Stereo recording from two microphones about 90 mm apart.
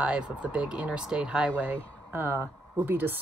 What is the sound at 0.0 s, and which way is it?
Speech, 15° right (ahead or behind).